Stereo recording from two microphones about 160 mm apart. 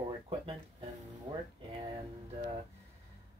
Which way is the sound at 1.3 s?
30° right (ahead or behind).